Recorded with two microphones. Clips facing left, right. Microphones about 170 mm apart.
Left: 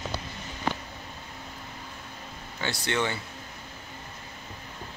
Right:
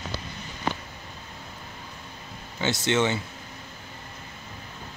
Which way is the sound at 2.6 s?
20° right (ahead or behind).